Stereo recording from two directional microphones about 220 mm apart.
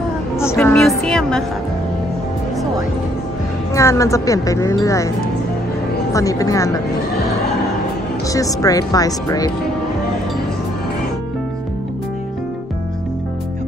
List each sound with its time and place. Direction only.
0.4 s a woman's voice: 10° left (ahead or behind)
3.7 s a woman's voice: 15° left (ahead or behind)
6.1 s a woman's voice: 15° left (ahead or behind)
8.3 s a woman's voice: 15° left (ahead or behind)